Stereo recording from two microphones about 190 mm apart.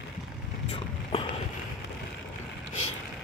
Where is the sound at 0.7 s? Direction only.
30° left (ahead or behind).